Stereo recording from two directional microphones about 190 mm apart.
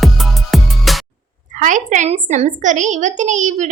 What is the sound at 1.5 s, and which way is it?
A woman's voice, 40° right (ahead or behind).